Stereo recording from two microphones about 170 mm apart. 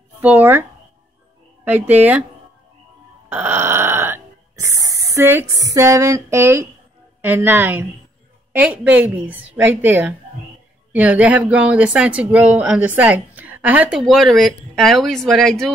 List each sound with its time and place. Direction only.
0.2 s speech: 10° right (ahead or behind)
3.3 s a sound: 10° right (ahead or behind)
7.2 s speech: 10° right (ahead or behind)